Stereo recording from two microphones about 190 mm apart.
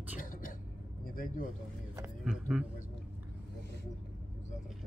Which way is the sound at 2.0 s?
5° right (ahead or behind).